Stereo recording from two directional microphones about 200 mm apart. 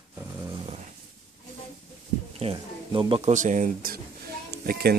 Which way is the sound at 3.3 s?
40° right (ahead or behind).